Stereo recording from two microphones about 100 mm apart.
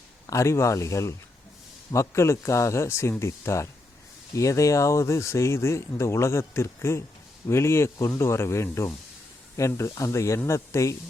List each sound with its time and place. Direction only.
0.3 s speech: 30° left (ahead or behind)